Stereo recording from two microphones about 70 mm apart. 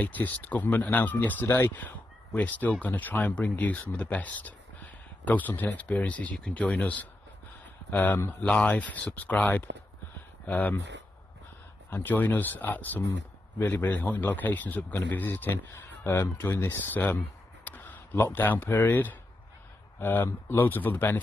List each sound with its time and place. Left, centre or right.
0.0 s a man's voice: left
11.9 s a man's voice: left